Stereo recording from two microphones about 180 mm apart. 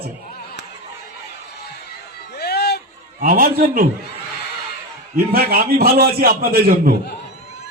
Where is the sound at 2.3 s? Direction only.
60° left (ahead or behind).